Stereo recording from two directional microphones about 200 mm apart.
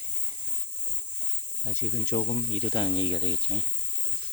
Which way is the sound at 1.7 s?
40° left (ahead or behind).